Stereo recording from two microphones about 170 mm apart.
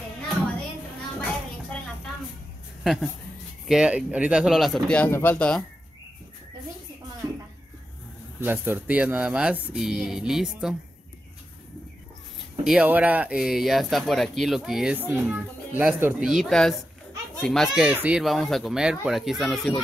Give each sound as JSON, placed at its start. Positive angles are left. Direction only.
{"t": 2.8, "sound": "speech", "side_deg": 0}
{"t": 7.2, "sound": "a sound", "side_deg": -25}
{"t": 8.4, "sound": "speech", "side_deg": -10}
{"t": 12.6, "sound": "speech", "side_deg": -10}